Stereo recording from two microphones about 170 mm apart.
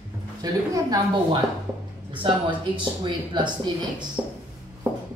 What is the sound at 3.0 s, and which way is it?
A woman's voice, 25° right (ahead or behind).